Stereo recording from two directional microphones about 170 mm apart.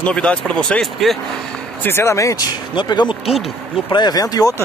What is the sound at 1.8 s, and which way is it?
Speech, 15° left (ahead or behind).